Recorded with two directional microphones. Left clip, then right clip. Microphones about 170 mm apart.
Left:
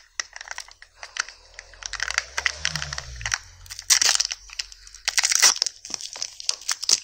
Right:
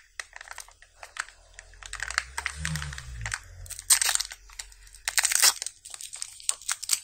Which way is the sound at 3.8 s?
15° left (ahead or behind).